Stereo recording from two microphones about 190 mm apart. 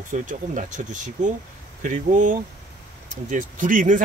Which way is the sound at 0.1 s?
40° right (ahead or behind).